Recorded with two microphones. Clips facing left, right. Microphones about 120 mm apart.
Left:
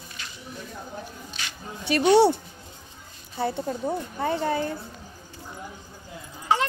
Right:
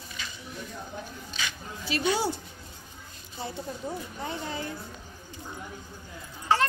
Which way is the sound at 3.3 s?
60° left (ahead or behind).